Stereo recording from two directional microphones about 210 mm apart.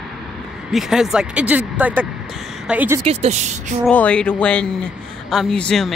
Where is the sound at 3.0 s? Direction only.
30° right (ahead or behind).